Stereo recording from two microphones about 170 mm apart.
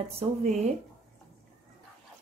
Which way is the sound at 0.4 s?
45° right (ahead or behind).